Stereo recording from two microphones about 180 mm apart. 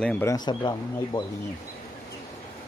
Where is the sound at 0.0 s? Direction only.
5° left (ahead or behind).